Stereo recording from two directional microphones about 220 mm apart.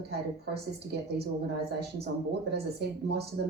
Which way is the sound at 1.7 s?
45° right (ahead or behind).